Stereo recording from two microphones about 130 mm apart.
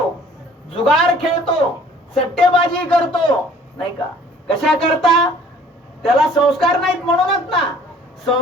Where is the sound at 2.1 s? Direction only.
5° left (ahead or behind).